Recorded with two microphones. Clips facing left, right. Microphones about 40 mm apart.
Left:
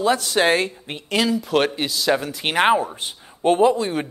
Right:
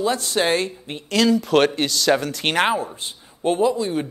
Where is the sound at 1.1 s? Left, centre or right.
Centre.